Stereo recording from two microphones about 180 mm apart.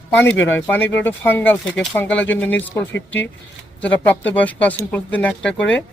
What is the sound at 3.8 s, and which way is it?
Speech, 10° left (ahead or behind).